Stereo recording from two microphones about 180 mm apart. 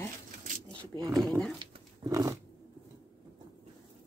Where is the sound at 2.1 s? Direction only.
20° right (ahead or behind).